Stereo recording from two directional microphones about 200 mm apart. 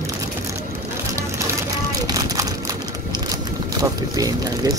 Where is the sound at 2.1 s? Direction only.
20° right (ahead or behind).